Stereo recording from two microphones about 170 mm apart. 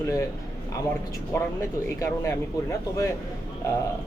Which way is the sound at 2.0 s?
20° left (ahead or behind).